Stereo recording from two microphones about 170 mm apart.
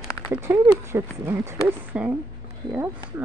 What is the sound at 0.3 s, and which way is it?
Speech, 15° right (ahead or behind).